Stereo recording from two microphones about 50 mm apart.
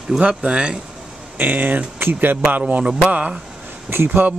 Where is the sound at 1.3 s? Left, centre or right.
Right.